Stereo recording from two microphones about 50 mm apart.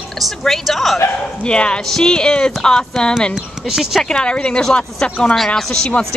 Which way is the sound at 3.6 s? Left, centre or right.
Centre.